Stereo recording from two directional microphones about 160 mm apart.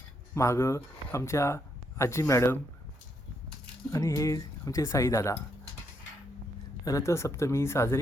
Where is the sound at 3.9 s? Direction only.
20° left (ahead or behind).